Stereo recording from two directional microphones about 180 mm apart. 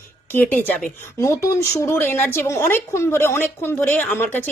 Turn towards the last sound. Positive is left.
turn(degrees=10)  # may be behind; listen again after turning